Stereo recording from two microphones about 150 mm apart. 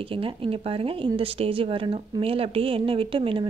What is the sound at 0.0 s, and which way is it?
Speech, 35° right (ahead or behind).